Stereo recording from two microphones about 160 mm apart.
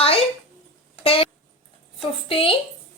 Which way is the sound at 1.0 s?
35° left (ahead or behind).